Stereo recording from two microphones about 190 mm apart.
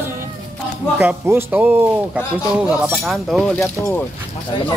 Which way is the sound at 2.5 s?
5° right (ahead or behind).